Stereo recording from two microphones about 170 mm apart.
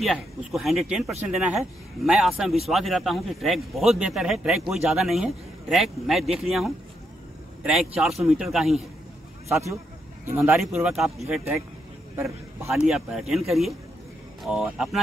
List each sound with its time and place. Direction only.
0.0 s speech: centre (ahead or behind)
9.5 s speech: 20° right (ahead or behind)
12.2 s a man's voice: 15° right (ahead or behind)
12.8 s speech: 5° right (ahead or behind)